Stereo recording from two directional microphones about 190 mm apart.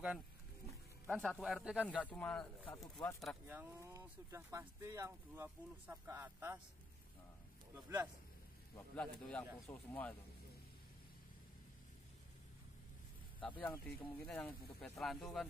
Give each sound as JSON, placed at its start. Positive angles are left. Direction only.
{"t": 1.0, "sound": "speech", "side_deg": 5}
{"t": 2.0, "sound": "speech", "side_deg": 5}
{"t": 2.8, "sound": "speech", "side_deg": 20}
{"t": 3.2, "sound": "speech", "side_deg": -5}
{"t": 8.7, "sound": "speech", "side_deg": 10}
{"t": 13.4, "sound": "speech", "side_deg": 10}